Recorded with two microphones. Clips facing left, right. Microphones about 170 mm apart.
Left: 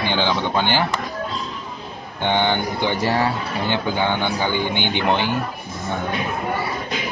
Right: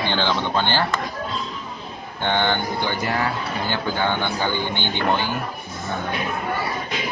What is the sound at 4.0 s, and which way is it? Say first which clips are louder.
A man's voice: left 2 dB; 15° left (ahead or behind).